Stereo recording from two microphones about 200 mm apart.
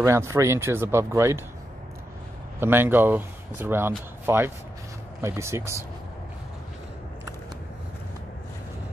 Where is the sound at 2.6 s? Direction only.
10° right (ahead or behind).